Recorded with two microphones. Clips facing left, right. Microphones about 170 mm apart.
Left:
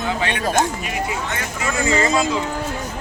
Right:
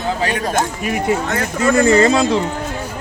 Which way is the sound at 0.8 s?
50° right (ahead or behind).